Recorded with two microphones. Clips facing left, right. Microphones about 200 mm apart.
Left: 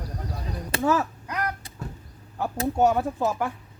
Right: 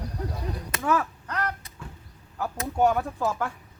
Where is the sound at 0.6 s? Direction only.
30° left (ahead or behind).